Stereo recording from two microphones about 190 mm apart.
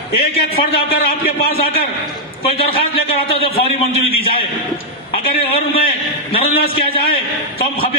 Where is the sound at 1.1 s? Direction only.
55° left (ahead or behind).